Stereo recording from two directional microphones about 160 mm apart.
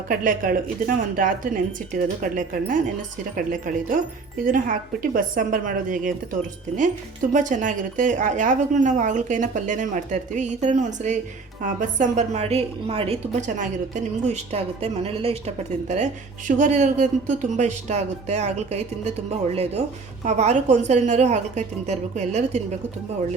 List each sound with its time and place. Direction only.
0.1 s speech: 60° right (ahead or behind)
7.3 s a woman's voice: 50° right (ahead or behind)
13.6 s a woman's voice: 50° right (ahead or behind)
20.2 s a woman's voice: 45° right (ahead or behind)